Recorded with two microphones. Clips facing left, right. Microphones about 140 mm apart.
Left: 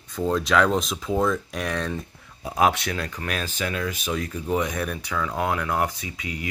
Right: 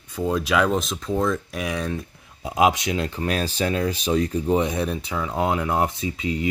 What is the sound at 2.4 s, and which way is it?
Speech, 20° right (ahead or behind).